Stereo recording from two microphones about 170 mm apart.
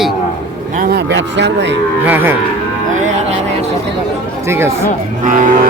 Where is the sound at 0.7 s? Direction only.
60° right (ahead or behind); by 1.7 s 90° right.